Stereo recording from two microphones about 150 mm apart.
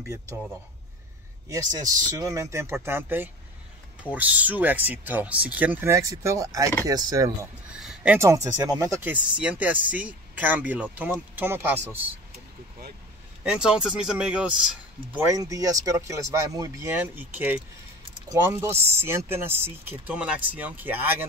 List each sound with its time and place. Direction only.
1.5 s speech: 25° right (ahead or behind)
7.8 s speech: 10° right (ahead or behind)
8.7 s speech: 20° right (ahead or behind)
13.4 s speech: 5° right (ahead or behind)
15.1 s speech: 20° right (ahead or behind)